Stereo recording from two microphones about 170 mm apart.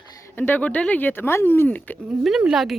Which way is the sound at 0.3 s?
10° left (ahead or behind).